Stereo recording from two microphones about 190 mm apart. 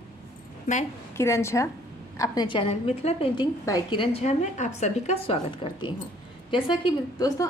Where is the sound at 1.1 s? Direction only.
15° left (ahead or behind); by 3.4 s 30° left (ahead or behind).